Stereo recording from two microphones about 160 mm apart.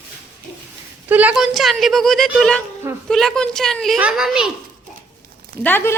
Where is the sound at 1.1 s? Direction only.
10° right (ahead or behind).